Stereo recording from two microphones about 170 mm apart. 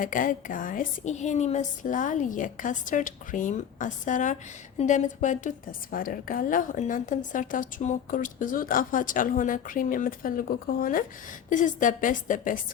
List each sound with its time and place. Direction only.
0.0 s a woman's voice: 50° left (ahead or behind)